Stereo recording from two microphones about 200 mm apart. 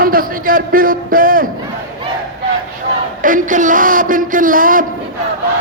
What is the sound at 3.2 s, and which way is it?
A man's voice, 40° right (ahead or behind).